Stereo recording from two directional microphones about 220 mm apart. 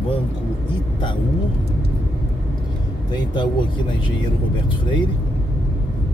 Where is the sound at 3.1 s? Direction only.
20° left (ahead or behind).